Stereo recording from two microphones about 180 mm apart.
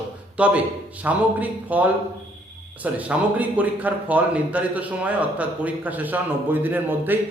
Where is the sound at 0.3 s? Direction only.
5° right (ahead or behind).